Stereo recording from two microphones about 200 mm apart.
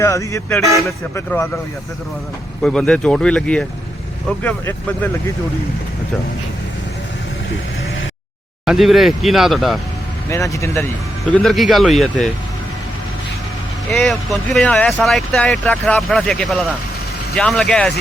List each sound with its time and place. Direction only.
0.0 s speech: 15° left (ahead or behind)
2.6 s speech: 5° left (ahead or behind)
8.6 s speech: centre (ahead or behind)
10.2 s speech: 15° left (ahead or behind)
11.3 s speech: centre (ahead or behind)
13.9 s speech: centre (ahead or behind)